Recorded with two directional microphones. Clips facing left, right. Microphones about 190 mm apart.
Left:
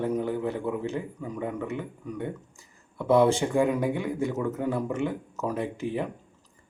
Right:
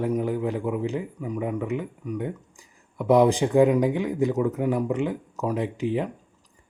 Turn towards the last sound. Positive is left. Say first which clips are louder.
# right 4 dB
turn(degrees=-15)  # may be behind; listen again after turning